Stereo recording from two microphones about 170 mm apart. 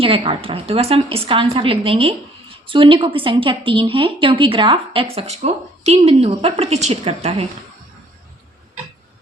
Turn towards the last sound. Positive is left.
turn(degrees=-35)  # may be behind; listen again after turning